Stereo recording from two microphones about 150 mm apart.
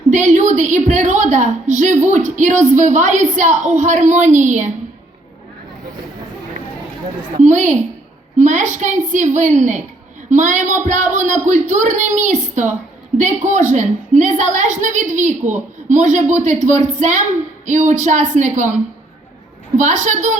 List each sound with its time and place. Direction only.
0.1 s a woman's voice: 55° right (ahead or behind)
7.3 s a woman's voice: 55° right (ahead or behind)
19.7 s a woman's voice: 55° right (ahead or behind)